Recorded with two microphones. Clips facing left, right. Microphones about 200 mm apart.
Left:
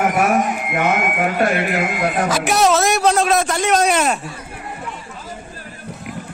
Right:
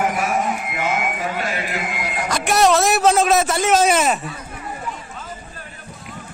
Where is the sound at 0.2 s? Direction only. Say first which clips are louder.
Left 4 dB; 55° left (ahead or behind).